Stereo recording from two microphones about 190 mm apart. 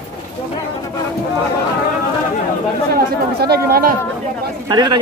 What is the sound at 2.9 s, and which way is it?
Speech, 55° right (ahead or behind).